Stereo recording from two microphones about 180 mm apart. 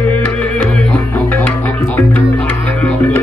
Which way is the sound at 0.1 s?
10° left (ahead or behind).